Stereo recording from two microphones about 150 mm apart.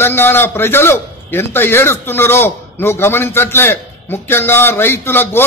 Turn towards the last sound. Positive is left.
turn(degrees=15)  # may be behind; listen again after turning